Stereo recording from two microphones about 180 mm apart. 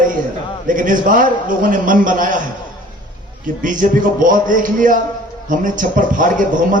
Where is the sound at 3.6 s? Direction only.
45° right (ahead or behind).